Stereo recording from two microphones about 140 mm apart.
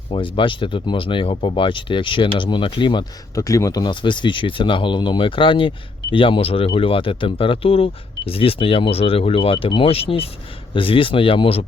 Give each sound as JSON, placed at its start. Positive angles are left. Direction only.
{"t": 0.1, "sound": "speech", "side_deg": 35}
{"t": 3.3, "sound": "speech", "side_deg": 25}